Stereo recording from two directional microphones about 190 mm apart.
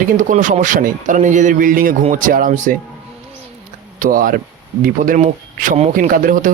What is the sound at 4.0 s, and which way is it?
A man's voice, 50° right (ahead or behind).